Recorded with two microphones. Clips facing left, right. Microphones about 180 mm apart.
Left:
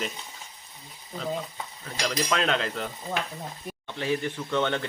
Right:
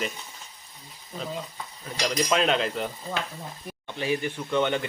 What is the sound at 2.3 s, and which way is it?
Stir, 20° right (ahead or behind).